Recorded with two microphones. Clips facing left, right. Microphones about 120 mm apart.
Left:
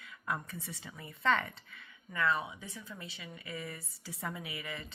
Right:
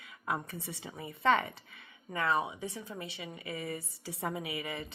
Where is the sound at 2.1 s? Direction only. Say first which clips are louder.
Right 2 dB; 25° right (ahead or behind).